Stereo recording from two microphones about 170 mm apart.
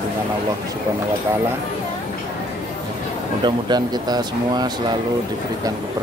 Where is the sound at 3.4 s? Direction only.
25° right (ahead or behind).